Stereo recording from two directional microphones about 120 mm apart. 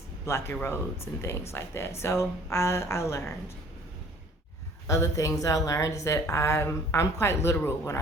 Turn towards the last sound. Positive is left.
turn(degrees=20)  # may be behind; listen again after turning